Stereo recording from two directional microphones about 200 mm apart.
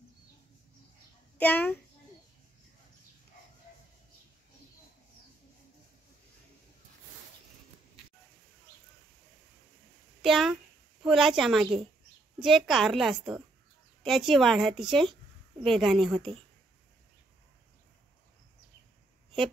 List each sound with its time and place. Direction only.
1.4 s a child's voice: 10° left (ahead or behind)
10.2 s a woman's voice: centre (ahead or behind)